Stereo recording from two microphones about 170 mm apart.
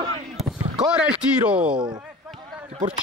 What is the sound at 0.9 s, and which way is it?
Speech, 5° right (ahead or behind).